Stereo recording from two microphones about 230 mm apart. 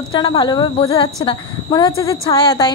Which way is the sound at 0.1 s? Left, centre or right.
Centre.